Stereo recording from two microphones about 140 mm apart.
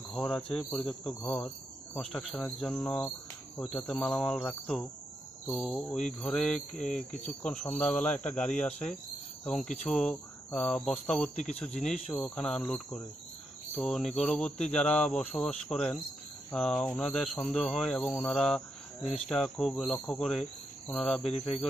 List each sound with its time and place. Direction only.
0.1 s speech: centre (ahead or behind)
11.3 s speech: 55° left (ahead or behind)
12.1 s speech: 5° left (ahead or behind)